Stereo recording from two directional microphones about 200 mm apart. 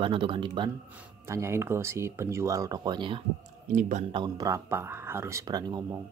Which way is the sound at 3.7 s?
40° right (ahead or behind).